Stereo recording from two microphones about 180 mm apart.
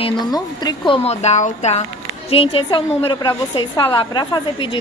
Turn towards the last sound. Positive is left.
turn(degrees=25)  # may be behind; listen again after turning